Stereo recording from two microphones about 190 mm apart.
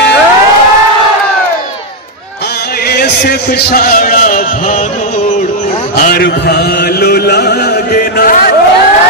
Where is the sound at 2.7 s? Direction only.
55° left (ahead or behind).